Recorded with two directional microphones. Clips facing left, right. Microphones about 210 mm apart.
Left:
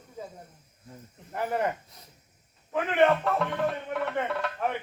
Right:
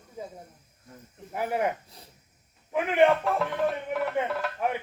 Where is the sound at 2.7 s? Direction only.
10° right (ahead or behind).